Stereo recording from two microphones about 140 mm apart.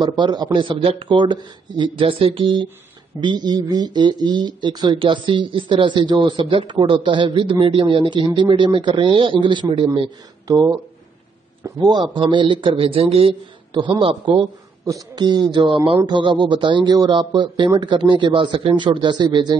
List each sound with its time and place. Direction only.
0.0 s a man's voice: 30° right (ahead or behind)
14.9 s speech: 25° right (ahead or behind)